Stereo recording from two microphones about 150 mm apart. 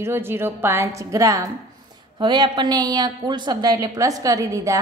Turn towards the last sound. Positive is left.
turn(degrees=-20)  # may be behind; listen again after turning